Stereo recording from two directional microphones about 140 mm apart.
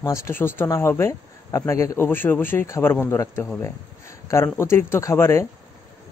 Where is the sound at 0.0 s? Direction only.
20° left (ahead or behind).